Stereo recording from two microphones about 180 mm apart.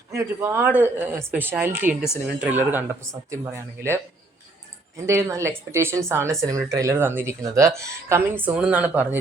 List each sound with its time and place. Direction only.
0.1 s speech: 15° right (ahead or behind)
5.0 s speech: 15° right (ahead or behind)